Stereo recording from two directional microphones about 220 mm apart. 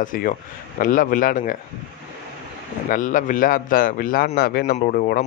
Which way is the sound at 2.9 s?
35° left (ahead or behind).